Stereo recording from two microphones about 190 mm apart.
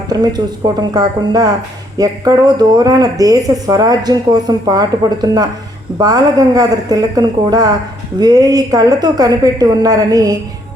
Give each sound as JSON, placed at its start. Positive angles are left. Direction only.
{"t": 0.1, "sound": "speech", "side_deg": -20}